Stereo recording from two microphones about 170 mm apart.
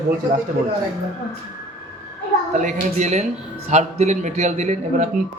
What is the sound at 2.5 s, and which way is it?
A man's voice, 45° right (ahead or behind).